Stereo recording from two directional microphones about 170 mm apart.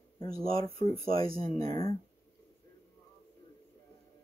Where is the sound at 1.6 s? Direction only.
20° left (ahead or behind).